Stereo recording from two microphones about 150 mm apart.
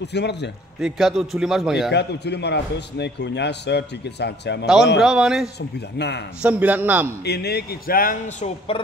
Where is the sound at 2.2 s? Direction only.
90° left.